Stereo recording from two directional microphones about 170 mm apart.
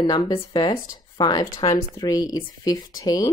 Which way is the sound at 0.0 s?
25° left (ahead or behind).